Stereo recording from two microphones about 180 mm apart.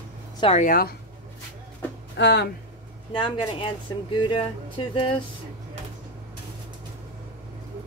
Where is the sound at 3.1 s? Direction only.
30° left (ahead or behind).